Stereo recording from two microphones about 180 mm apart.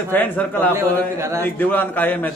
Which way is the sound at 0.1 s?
10° left (ahead or behind).